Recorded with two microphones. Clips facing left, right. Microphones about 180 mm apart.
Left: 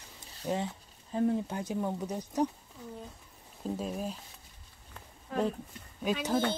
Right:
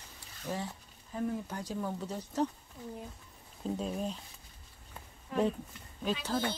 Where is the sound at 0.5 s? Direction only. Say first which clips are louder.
Left 5 dB; 20° left (ahead or behind).